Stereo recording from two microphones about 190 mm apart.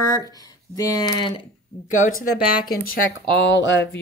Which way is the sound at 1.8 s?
40° left (ahead or behind).